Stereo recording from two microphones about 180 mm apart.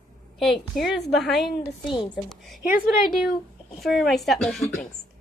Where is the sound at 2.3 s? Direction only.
Centre (ahead or behind).